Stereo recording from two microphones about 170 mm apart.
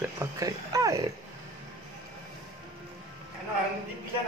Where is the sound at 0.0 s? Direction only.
20° right (ahead or behind).